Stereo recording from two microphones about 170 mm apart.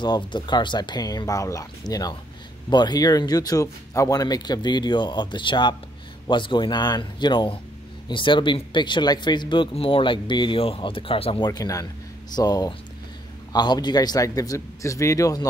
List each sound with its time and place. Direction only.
0.0 s speech: 25° left (ahead or behind)